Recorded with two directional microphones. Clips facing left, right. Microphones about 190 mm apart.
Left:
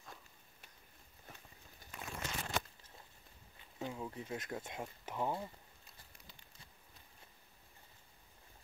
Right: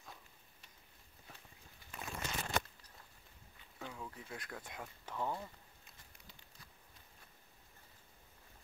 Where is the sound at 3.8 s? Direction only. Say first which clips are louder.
Left 5 dB; 25° left (ahead or behind).